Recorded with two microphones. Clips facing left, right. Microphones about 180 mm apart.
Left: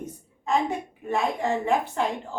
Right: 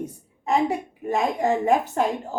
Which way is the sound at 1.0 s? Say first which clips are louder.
Right 3 dB; 40° right (ahead or behind).